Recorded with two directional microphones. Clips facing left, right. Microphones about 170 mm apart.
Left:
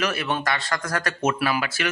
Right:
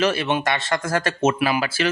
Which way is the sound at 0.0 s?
25° right (ahead or behind).